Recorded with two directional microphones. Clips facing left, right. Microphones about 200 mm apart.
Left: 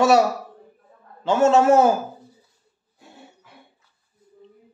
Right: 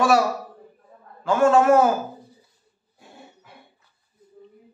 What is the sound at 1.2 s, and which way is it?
Speech, 25° left (ahead or behind).